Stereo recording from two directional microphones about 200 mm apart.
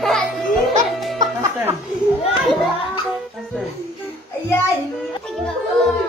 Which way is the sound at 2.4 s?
Centre (ahead or behind).